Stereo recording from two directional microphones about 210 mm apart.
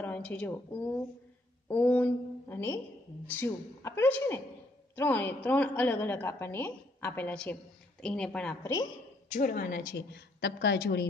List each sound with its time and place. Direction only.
0.0 s a woman's voice: 5° left (ahead or behind)
9.3 s a woman's voice: 40° left (ahead or behind)